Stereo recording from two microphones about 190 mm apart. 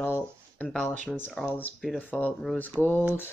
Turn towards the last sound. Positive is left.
turn(degrees=10)  # may be behind; listen again after turning